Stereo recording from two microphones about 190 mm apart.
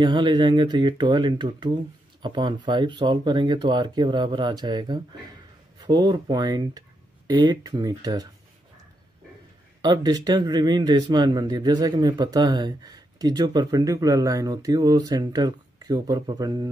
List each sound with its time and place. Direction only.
0.0 s a man's voice: 25° right (ahead or behind)
9.8 s a man's voice: 20° right (ahead or behind)